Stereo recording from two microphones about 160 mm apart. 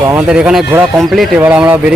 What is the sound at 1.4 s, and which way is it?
Speech, 10° right (ahead or behind).